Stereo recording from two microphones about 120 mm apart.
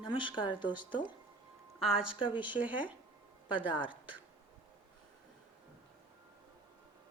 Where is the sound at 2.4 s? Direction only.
10° right (ahead or behind).